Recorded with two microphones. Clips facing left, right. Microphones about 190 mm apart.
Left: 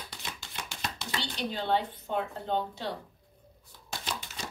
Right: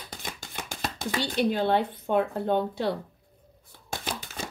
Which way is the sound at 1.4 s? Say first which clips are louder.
Right 4 dB; 60° right (ahead or behind).